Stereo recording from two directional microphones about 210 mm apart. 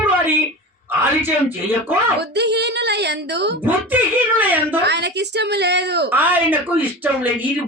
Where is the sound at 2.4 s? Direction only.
55° right (ahead or behind).